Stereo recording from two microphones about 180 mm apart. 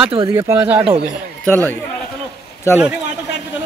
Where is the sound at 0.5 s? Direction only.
10° right (ahead or behind).